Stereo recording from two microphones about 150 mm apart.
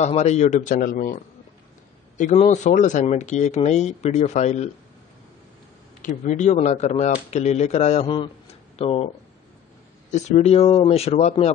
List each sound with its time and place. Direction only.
0.0 s speech: 50° left (ahead or behind); by 1.2 s 65° left (ahead or behind)
2.3 s speech: 50° left (ahead or behind)
6.0 s speech: 55° left (ahead or behind)
10.1 s speech: 50° left (ahead or behind)